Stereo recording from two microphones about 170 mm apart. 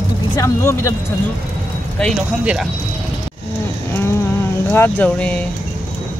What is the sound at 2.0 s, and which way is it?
Speech, 5° right (ahead or behind).